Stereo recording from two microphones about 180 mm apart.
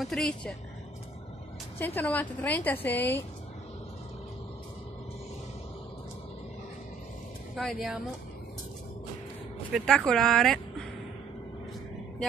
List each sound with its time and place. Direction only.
0.0 s a woman's voice: centre (ahead or behind)
1.8 s a woman's voice: 10° left (ahead or behind)
7.5 s a woman's voice: centre (ahead or behind)
9.7 s speech: centre (ahead or behind)